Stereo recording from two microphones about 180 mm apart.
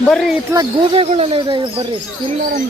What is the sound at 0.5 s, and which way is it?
Speech, 15° right (ahead or behind).